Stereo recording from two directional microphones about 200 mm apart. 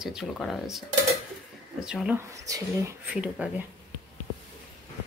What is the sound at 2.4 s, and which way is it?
Speech, 15° right (ahead or behind).